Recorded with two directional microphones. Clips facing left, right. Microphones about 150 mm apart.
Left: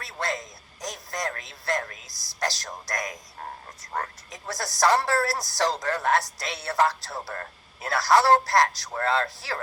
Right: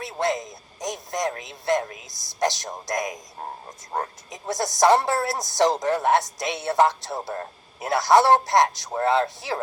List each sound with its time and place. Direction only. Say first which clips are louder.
0.0 s speech: right 6 dB; 20° right (ahead or behind)